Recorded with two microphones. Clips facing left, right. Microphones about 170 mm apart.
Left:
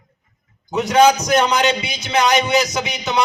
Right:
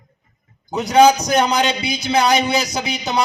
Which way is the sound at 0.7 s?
35° right (ahead or behind).